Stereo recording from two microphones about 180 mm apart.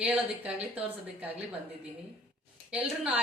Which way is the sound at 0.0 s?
5° right (ahead or behind).